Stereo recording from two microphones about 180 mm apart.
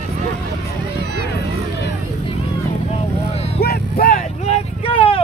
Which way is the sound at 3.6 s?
55° left (ahead or behind).